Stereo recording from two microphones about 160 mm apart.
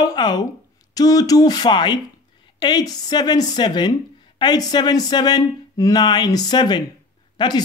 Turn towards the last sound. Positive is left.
turn(degrees=30)  # may be behind; listen again after turning